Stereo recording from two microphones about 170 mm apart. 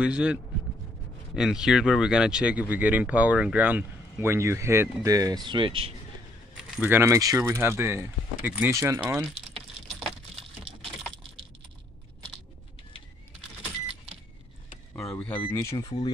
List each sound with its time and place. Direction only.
0.0 s speech: 5° right (ahead or behind); by 5.9 s 30° right (ahead or behind)
6.5 s speech: 10° right (ahead or behind)
9.0 s speech: 5° right (ahead or behind)
15.2 s speech: 15° left (ahead or behind)